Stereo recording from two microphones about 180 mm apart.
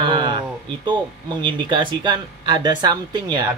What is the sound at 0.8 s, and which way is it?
Speech, 25° right (ahead or behind).